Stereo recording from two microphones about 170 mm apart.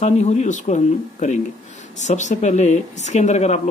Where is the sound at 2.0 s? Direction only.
45° left (ahead or behind).